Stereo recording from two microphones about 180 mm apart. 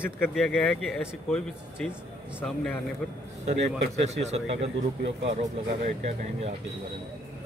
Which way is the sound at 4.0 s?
35° right (ahead or behind).